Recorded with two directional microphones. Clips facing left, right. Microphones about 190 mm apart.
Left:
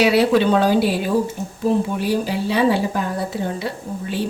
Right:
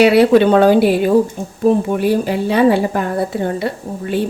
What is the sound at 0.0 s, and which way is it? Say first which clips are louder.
Speech: right 6 dB; 55° right (ahead or behind).